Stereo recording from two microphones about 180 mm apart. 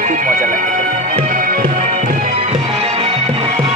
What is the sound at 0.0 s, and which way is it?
Music, 45° right (ahead or behind).